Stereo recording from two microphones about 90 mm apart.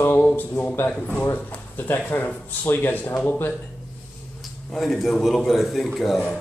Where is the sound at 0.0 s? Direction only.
25° left (ahead or behind).